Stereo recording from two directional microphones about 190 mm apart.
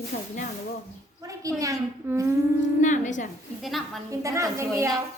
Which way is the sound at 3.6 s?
Centre (ahead or behind).